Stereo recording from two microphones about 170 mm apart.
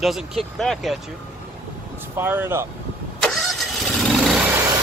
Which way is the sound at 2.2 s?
15° right (ahead or behind).